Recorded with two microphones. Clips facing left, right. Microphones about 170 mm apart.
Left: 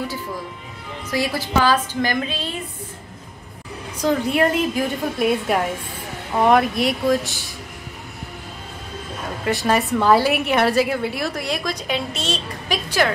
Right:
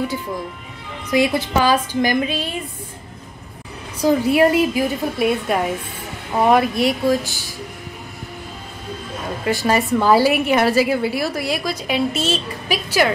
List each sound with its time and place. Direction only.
1.1 s a woman's voice: 20° right (ahead or behind)
4.0 s a woman's voice: 10° right (ahead or behind)
9.4 s a woman's voice: centre (ahead or behind)